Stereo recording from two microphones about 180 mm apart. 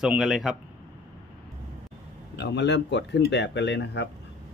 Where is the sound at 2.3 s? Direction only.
70° left (ahead or behind).